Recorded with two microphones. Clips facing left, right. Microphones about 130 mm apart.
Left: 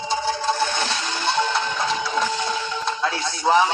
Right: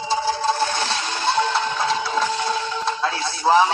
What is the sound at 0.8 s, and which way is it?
Music, centre (ahead or behind).